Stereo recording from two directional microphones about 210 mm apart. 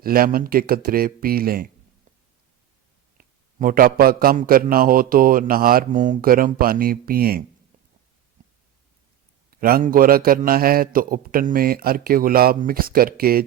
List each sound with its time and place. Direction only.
0.0 s a man's voice: 45° right (ahead or behind)
3.2 s a man's voice: 40° right (ahead or behind)
8.4 s a sound: 40° right (ahead or behind)
9.6 s a man's voice: 45° right (ahead or behind)